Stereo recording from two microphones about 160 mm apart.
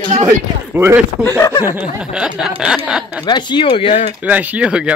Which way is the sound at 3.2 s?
30° left (ahead or behind).